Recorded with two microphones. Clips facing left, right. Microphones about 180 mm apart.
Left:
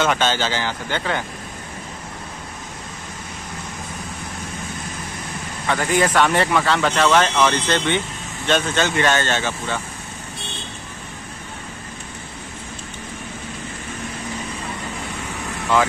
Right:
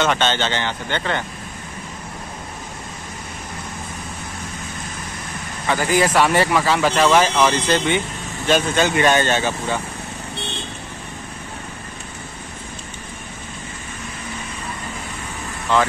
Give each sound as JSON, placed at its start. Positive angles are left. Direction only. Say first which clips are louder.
{"t": 0.0, "sound": "speech", "louder": "even", "side_deg": 5}
{"t": 5.7, "sound": "speech", "louder": "right 1 dB", "side_deg": 0}